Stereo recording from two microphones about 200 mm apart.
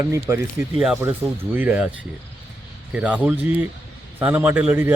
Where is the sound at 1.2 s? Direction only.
Centre (ahead or behind).